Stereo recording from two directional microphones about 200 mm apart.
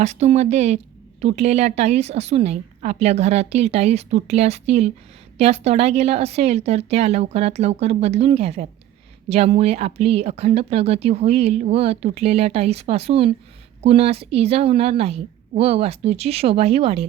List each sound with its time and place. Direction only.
0.0 s speech: 35° right (ahead or behind)